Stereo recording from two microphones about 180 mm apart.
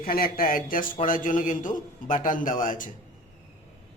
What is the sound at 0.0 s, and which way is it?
A man's voice, 55° left (ahead or behind).